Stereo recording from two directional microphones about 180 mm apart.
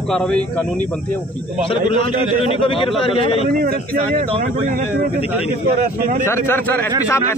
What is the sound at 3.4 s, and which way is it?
A man's voice, 55° right (ahead or behind).